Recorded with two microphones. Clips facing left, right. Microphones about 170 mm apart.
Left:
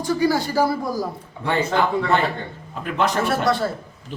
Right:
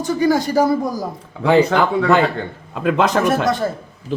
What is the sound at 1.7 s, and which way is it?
A man's voice, 80° right.